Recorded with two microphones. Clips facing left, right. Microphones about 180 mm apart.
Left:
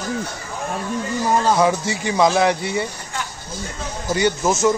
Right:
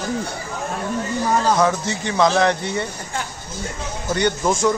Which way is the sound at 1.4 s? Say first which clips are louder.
Left 1 dB; 10° left (ahead or behind).